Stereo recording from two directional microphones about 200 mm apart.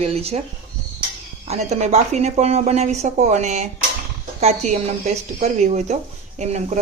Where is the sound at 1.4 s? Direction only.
35° right (ahead or behind).